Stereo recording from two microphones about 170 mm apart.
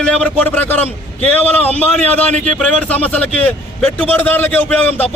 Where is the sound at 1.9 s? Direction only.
10° left (ahead or behind).